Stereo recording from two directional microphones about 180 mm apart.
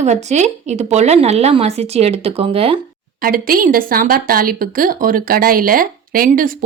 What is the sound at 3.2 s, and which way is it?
A woman's voice, 55° right (ahead or behind).